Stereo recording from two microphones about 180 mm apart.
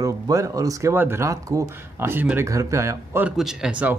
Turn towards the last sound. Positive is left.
turn(degrees=-5)  # may be behind; listen again after turning